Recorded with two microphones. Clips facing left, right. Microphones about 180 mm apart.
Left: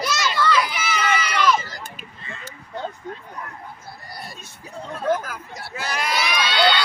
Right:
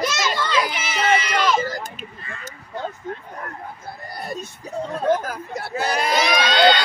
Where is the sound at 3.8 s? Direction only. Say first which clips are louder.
Right 10 dB; 50° right (ahead or behind).